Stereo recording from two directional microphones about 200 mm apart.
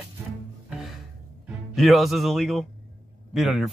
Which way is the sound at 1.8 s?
Centre (ahead or behind).